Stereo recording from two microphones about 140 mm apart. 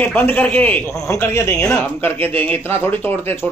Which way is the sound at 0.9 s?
25° left (ahead or behind).